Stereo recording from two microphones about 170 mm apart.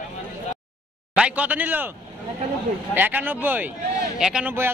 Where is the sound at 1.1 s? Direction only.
10° right (ahead or behind).